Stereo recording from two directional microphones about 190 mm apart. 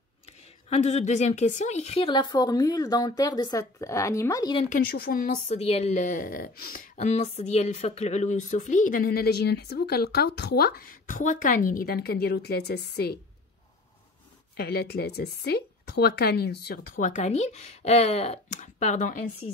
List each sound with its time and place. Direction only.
0.7 s a woman's voice: 35° left (ahead or behind); by 4.6 s 20° left (ahead or behind)
4.6 s a woman's voice: 50° left (ahead or behind)
14.6 s a woman's voice: 55° left (ahead or behind); by 19.1 s 40° left (ahead or behind)